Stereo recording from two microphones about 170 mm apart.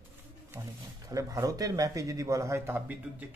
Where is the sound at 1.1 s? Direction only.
20° right (ahead or behind).